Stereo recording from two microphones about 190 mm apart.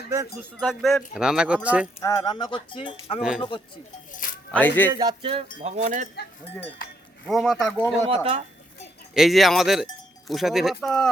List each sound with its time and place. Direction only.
0.5 s speech: centre (ahead or behind)
2.0 s speech: 15° left (ahead or behind)
3.2 s speech: 5° right (ahead or behind)
4.1 s speech: 45° left (ahead or behind)
4.5 s speech: 10° left (ahead or behind)
4.9 s a sound: 20° right (ahead or behind)
5.5 s speech: 35° right (ahead or behind)
7.3 s speech: centre (ahead or behind)
8.1 s a sound: 30° right (ahead or behind)
9.1 s speech: centre (ahead or behind)